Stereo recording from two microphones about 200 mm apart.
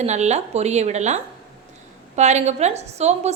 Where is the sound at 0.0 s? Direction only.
35° right (ahead or behind).